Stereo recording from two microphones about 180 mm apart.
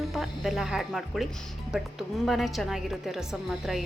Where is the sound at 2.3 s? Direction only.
Centre (ahead or behind).